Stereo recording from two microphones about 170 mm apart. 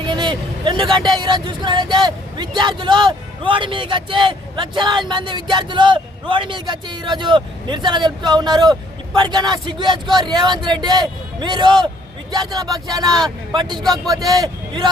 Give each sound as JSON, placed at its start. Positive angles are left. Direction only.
{"t": 0.0, "sound": "a man's voice", "side_deg": -25}